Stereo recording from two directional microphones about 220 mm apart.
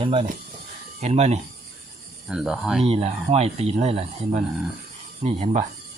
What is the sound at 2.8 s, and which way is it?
Speech, 30° right (ahead or behind).